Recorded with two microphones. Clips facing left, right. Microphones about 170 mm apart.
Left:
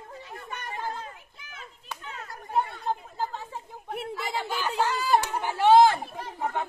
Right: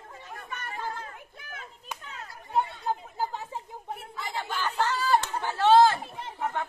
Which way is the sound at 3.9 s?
75° left (ahead or behind).